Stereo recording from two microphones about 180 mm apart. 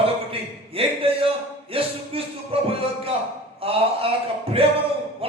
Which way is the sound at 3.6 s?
30° right (ahead or behind).